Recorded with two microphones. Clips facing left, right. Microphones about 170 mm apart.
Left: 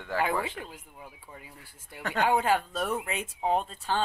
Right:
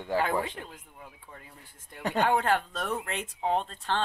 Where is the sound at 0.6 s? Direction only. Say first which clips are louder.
Left 2 dB; 5° left (ahead or behind).